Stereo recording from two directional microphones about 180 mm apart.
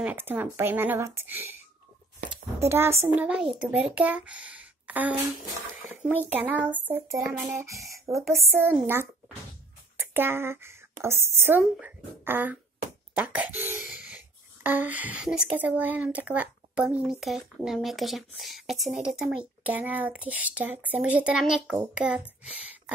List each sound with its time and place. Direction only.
0.0 s a child's voice: 10° right (ahead or behind)
2.6 s a child's voice: 15° right (ahead or behind)
8.3 s speech: centre (ahead or behind)
10.1 s a child's voice: 10° right (ahead or behind)